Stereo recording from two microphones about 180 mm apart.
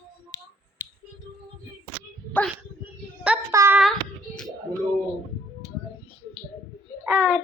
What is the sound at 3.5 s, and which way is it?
Speech, 15° right (ahead or behind).